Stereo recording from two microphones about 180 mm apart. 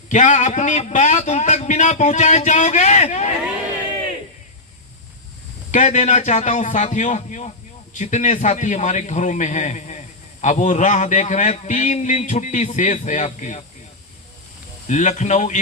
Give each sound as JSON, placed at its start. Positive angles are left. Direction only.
{"t": 0.1, "sound": "a man's voice", "side_deg": 40}
{"t": 5.7, "sound": "a man's voice", "side_deg": 40}
{"t": 14.8, "sound": "a man's voice", "side_deg": 40}